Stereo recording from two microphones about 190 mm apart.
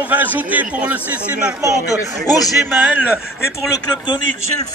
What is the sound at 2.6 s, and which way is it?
Speech, 10° right (ahead or behind).